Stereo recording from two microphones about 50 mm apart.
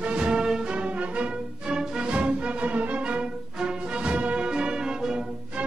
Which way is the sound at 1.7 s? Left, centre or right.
Centre.